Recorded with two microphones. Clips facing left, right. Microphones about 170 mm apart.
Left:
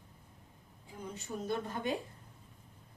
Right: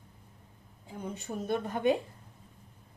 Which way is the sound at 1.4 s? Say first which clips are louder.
Right 5 dB; 60° right (ahead or behind).